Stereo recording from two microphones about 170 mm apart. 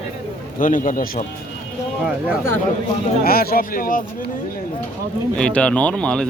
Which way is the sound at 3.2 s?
60° left (ahead or behind).